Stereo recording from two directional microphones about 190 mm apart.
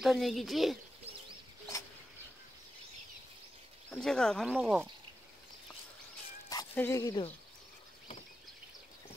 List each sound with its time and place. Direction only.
0.0 s speech: centre (ahead or behind)
3.9 s speech: 5° left (ahead or behind)
6.5 s speech: 15° left (ahead or behind)